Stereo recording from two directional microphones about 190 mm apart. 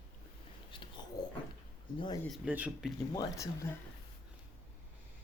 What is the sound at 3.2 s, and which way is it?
Speech, 15° left (ahead or behind).